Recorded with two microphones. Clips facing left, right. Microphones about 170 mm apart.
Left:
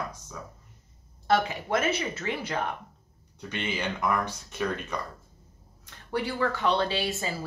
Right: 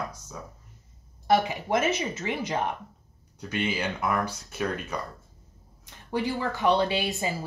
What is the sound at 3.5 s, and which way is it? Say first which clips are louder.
Speech: right 3 dB; 10° right (ahead or behind).